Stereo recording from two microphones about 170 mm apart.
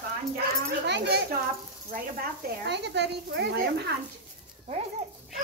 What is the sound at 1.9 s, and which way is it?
A woman's voice, 60° right (ahead or behind).